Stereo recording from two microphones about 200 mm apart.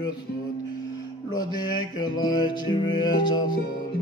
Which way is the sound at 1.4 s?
20° left (ahead or behind).